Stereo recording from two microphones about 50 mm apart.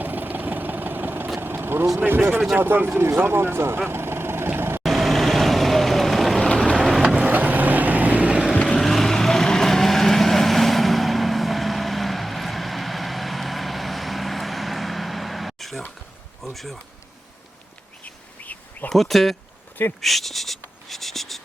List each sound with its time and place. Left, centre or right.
0.0 s vehicle: right
2.0 s speech: right
3.8 s vehicle: right
4.8 s vehicle: centre
7.0 s vehicle: right
7.3 s vehicle: right
8.3 s boat: centre
8.8 s vehicle: centre
16.4 s bee: centre
18.0 s bird: left
18.9 s speech: centre
20.0 s writing: centre